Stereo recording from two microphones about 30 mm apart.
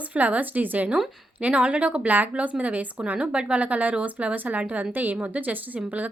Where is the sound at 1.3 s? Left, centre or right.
Right.